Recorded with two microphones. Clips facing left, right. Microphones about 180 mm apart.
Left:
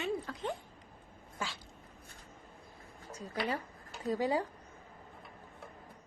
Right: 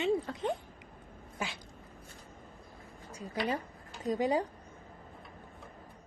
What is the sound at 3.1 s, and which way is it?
Speech, 10° right (ahead or behind).